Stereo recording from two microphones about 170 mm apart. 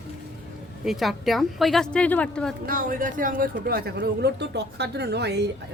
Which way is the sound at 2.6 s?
55° right (ahead or behind).